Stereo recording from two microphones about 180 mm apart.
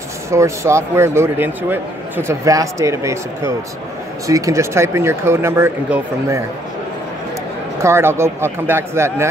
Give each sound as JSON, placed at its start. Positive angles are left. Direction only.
{"t": 0.3, "sound": "a man's voice", "side_deg": -15}
{"t": 7.8, "sound": "a man's voice", "side_deg": -15}